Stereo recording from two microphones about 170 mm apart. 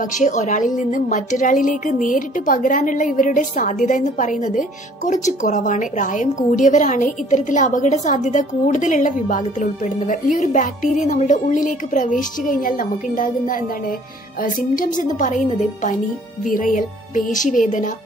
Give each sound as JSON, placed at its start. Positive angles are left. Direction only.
{"t": 0.0, "sound": "a woman's voice", "side_deg": 50}